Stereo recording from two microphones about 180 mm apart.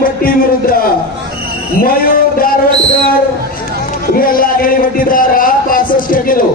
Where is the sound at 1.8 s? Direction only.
55° left (ahead or behind).